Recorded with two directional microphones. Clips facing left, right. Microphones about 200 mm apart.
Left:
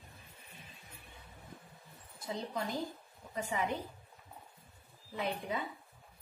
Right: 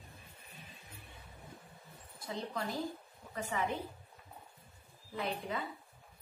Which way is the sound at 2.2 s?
20° left (ahead or behind).